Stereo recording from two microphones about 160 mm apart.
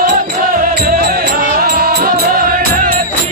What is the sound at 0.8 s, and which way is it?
Music, 65° right (ahead or behind).